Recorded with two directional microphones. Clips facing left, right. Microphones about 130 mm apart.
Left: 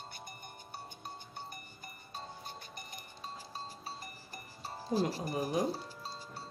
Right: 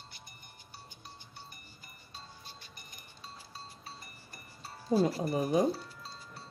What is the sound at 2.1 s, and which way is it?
Music, 50° left (ahead or behind).